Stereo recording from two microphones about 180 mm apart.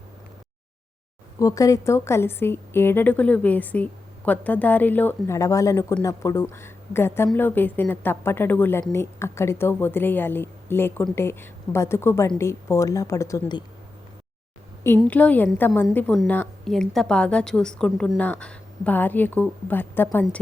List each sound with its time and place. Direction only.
1.4 s a woman's voice: 20° left (ahead or behind)
15.0 s a woman's voice: 10° left (ahead or behind)